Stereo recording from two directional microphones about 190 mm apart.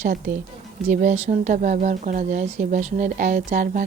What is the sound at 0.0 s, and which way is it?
Speech, 50° right (ahead or behind).